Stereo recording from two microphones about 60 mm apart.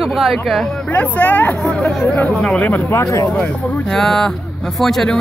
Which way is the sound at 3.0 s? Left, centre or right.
Left.